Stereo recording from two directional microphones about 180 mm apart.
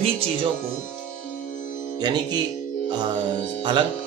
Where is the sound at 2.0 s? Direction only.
25° right (ahead or behind).